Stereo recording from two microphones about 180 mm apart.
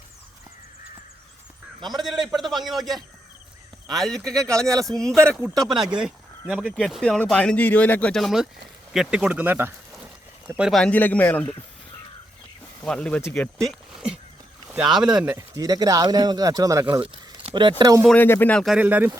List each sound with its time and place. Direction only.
2.0 s speech: centre (ahead or behind)
5.4 s speech: 25° right (ahead or behind)
5.9 s speech: 5° right (ahead or behind)
12.8 s speech: 5° left (ahead or behind)
13.7 s speech: 5° right (ahead or behind); by 18.0 s 20° right (ahead or behind)
18.2 s speech: 10° left (ahead or behind); by 19.1 s 10° right (ahead or behind)